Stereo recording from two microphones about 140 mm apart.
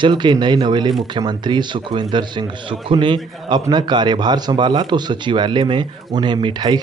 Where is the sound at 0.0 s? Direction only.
30° right (ahead or behind).